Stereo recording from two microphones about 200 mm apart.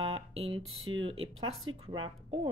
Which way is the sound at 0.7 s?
90° right.